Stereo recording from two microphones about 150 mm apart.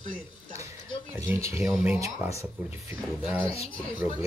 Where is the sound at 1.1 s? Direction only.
20° right (ahead or behind).